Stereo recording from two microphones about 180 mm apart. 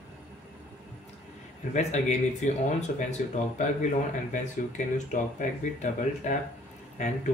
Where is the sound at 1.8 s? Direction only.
40° left (ahead or behind).